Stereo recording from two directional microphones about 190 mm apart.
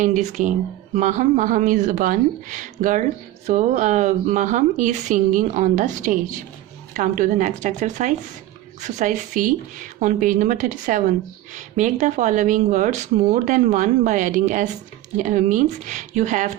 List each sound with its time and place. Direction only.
0.0 s speech: 40° right (ahead or behind)